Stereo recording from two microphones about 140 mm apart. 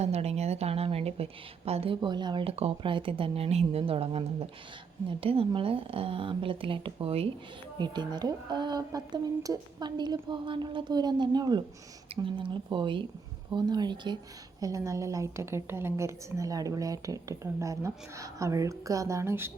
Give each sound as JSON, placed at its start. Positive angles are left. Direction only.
{"t": 0.0, "sound": "a woman's voice", "side_deg": -50}
{"t": 7.8, "sound": "speech", "side_deg": -30}
{"t": 14.6, "sound": "a woman's voice", "side_deg": -20}